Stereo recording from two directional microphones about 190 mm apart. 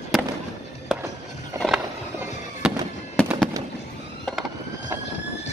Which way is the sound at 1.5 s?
Centre (ahead or behind).